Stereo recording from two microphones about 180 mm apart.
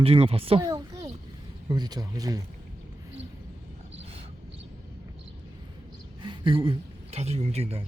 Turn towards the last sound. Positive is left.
turn(degrees=-35)  # may be behind; listen again after turning